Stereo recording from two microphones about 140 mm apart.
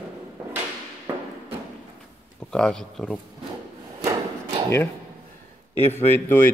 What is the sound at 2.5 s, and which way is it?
Speech, 5° left (ahead or behind).